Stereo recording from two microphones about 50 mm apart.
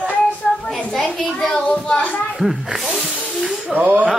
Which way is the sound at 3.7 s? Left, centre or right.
Right.